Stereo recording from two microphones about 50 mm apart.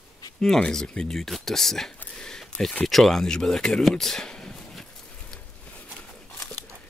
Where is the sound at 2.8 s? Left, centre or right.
Centre.